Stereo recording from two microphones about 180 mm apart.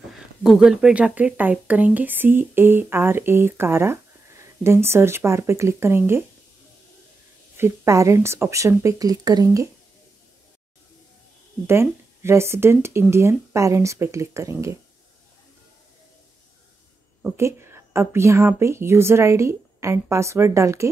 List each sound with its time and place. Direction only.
0.4 s speech: 5° right (ahead or behind)
7.5 s speech: 15° right (ahead or behind)
11.6 s speech: 15° right (ahead or behind)
17.2 s speech: 15° right (ahead or behind)